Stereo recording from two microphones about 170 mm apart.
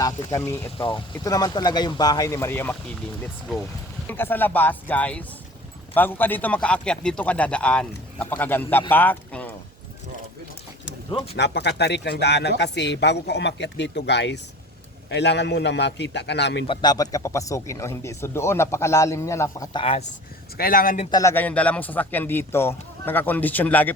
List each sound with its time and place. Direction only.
0.0 s speech: 20° left (ahead or behind)
0.8 s speech: 30° left (ahead or behind); by 2.7 s 15° left (ahead or behind)
4.0 s speech: 10° left (ahead or behind)
11.3 s speech: 85° left
16.6 s speech: 25° left (ahead or behind)
19.8 s speech: 35° left (ahead or behind)
20.6 s speech: 60° left (ahead or behind)
21.1 s speech: 20° left (ahead or behind)